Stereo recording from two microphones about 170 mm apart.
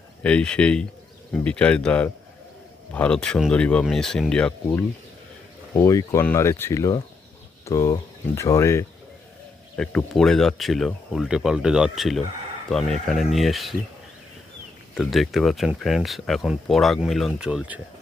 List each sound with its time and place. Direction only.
0.2 s speech: 5° left (ahead or behind)
5.7 s speech: 20° left (ahead or behind)
9.7 s speech: 5° left (ahead or behind)
14.9 s speech: centre (ahead or behind)